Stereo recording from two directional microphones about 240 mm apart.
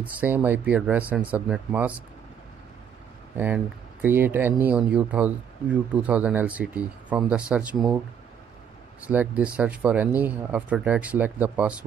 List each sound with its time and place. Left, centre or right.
0.0 s speech: centre
3.3 s speech: centre
9.0 s speech: centre